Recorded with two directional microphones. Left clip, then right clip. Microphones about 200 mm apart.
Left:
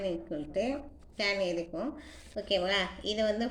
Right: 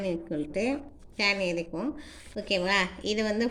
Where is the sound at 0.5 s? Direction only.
40° right (ahead or behind).